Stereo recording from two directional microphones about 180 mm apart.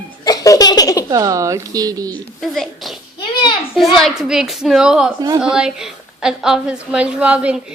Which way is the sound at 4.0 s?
Centre (ahead or behind).